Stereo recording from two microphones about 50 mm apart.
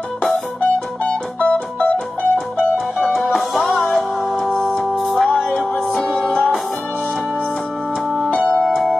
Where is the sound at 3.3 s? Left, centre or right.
Centre.